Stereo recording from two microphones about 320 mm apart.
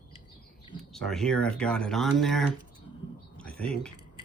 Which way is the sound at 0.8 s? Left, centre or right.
Centre.